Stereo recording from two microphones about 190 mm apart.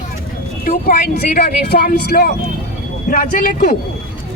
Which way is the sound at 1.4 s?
60° left (ahead or behind).